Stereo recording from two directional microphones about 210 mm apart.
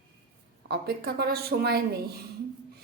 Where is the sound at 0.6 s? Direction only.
50° right (ahead or behind).